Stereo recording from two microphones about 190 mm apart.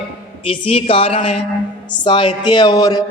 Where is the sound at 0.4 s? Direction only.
30° left (ahead or behind).